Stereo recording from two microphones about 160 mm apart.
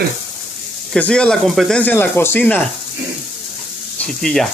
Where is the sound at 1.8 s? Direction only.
15° left (ahead or behind).